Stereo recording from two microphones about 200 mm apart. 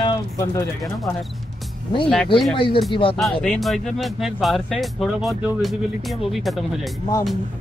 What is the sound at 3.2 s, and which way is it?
Speech, 5° left (ahead or behind).